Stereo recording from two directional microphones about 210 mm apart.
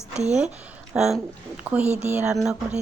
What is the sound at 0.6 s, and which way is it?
A woman's voice, 5° right (ahead or behind).